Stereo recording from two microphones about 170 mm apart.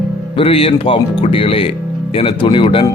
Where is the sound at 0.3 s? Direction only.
35° left (ahead or behind).